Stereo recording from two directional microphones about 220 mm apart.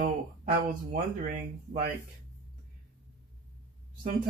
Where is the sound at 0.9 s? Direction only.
40° right (ahead or behind).